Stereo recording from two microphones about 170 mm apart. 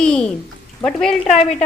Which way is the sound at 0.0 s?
5° left (ahead or behind).